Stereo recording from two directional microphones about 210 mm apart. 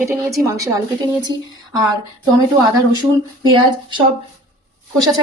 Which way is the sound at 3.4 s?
20° right (ahead or behind).